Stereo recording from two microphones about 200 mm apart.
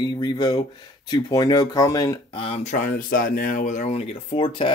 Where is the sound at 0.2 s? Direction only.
20° left (ahead or behind).